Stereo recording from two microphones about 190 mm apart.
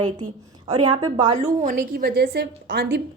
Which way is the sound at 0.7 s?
25° right (ahead or behind).